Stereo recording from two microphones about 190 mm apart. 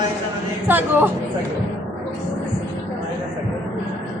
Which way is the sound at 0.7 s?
10° right (ahead or behind).